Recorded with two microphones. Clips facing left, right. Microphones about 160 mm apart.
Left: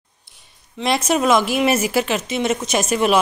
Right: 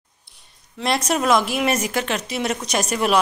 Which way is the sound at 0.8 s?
Centre (ahead or behind).